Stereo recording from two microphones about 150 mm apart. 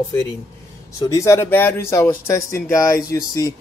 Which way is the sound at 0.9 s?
20° left (ahead or behind).